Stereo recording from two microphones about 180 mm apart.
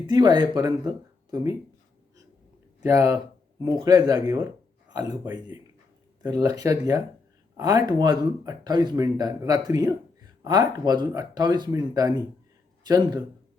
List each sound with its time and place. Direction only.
0.1 s speech: 25° right (ahead or behind)
2.8 s a man's voice: 15° right (ahead or behind)
6.2 s a man's voice: 20° right (ahead or behind)